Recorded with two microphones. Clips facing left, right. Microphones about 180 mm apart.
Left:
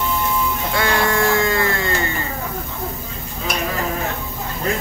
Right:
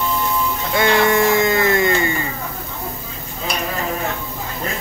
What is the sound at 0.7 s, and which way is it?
Sheep, 20° right (ahead or behind).